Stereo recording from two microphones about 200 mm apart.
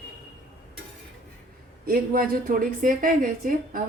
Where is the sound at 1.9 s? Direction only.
45° right (ahead or behind).